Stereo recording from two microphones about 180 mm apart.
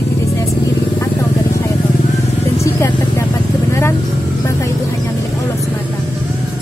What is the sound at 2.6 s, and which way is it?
Vehicle, 15° left (ahead or behind).